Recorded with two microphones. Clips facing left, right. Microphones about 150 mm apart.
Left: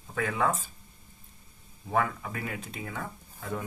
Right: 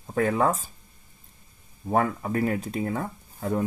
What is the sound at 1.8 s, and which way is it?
Speech, 40° right (ahead or behind).